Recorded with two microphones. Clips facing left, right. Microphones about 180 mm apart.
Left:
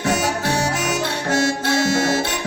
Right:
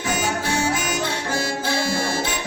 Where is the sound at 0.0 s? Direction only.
75° left (ahead or behind).